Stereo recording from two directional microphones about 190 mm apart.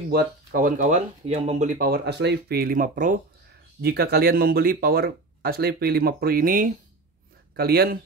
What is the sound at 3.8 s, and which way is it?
Speech, 55° right (ahead or behind).